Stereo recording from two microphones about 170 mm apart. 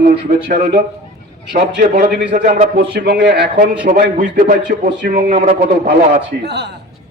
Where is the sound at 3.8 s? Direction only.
50° right (ahead or behind).